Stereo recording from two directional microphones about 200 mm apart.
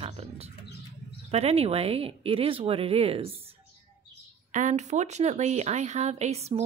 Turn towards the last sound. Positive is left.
turn(degrees=-30)  # may be behind; listen again after turning